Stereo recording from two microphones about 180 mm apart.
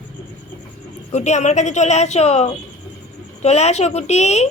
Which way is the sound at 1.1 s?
40° left (ahead or behind).